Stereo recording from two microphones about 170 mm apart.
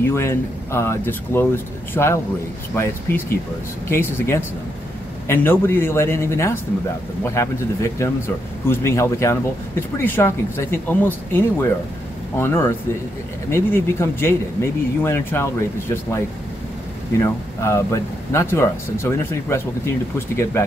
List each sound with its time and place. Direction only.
0.0 s speech: 15° left (ahead or behind)
17.2 s speech: 15° left (ahead or behind)